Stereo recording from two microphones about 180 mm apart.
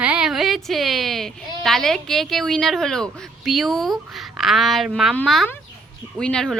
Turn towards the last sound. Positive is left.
turn(degrees=5)  # may be behind; listen again after turning